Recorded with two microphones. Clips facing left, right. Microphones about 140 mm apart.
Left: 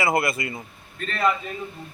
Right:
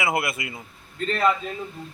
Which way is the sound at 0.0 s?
5° right (ahead or behind).